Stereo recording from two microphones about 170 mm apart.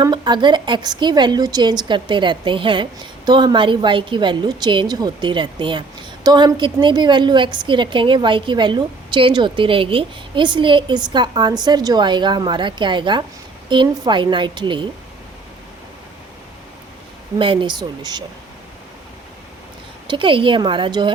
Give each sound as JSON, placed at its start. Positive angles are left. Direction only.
{"t": 0.0, "sound": "a woman's voice", "side_deg": -25}
{"t": 17.3, "sound": "a woman's voice", "side_deg": -30}
{"t": 20.1, "sound": "a woman's voice", "side_deg": -30}